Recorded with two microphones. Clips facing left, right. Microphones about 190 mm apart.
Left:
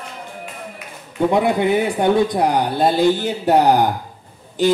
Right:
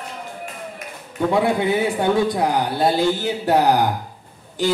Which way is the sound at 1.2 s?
20° left (ahead or behind).